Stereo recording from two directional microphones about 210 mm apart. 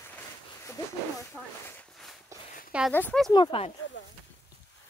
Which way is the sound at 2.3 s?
15° right (ahead or behind).